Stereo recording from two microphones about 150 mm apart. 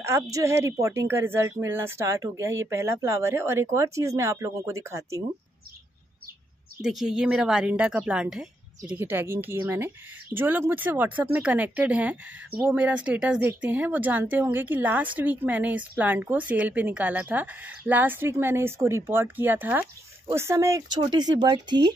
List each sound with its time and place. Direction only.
0.0 s speech: 20° right (ahead or behind)
6.8 s a woman's voice: centre (ahead or behind); by 21.9 s 30° right (ahead or behind)